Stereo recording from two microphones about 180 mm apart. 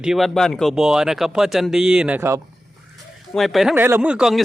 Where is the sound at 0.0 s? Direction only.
Centre (ahead or behind).